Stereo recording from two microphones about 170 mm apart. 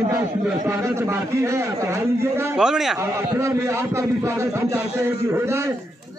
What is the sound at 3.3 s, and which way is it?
A man's voice, 15° right (ahead or behind).